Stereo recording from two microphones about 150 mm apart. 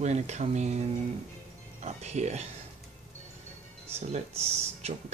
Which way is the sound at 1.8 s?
50° right (ahead or behind).